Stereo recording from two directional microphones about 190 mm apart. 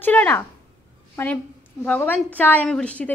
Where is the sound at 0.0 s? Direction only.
10° left (ahead or behind).